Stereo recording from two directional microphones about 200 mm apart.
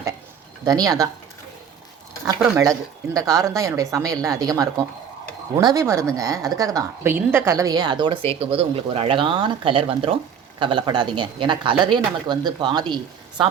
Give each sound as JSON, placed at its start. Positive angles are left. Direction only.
{"t": 0.6, "sound": "speech", "side_deg": -20}
{"t": 2.2, "sound": "a woman's voice", "side_deg": -15}